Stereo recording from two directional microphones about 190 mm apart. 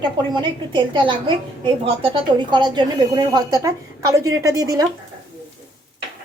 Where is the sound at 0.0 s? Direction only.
25° right (ahead or behind).